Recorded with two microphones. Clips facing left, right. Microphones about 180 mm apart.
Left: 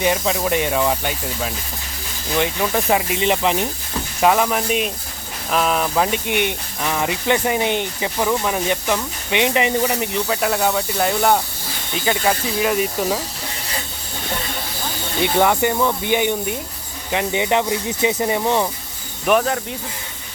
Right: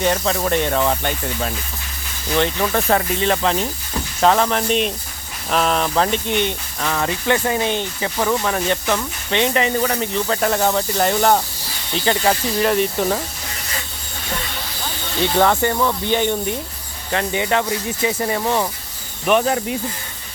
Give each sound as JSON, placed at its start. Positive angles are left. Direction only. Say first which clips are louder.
{"t": 0.0, "sound": "speech", "louder": "even", "side_deg": 10}
{"t": 15.2, "sound": "speech", "louder": "even", "side_deg": 15}
{"t": 19.2, "sound": "speech", "louder": "even", "side_deg": 0}